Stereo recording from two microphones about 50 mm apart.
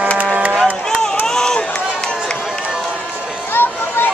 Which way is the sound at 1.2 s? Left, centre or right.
Centre.